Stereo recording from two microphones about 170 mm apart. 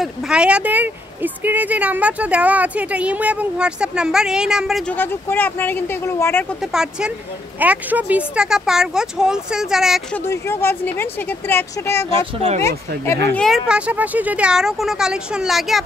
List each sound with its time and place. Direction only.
0.0 s speech: 5° right (ahead or behind)
4.9 s speech: 10° left (ahead or behind)
6.7 s speech: 5° right (ahead or behind)
10.1 s speech: 15° left (ahead or behind)
12.2 s speech: 35° right (ahead or behind)
12.6 s speech: 15° left (ahead or behind)
13.3 s speech: 5° left (ahead or behind)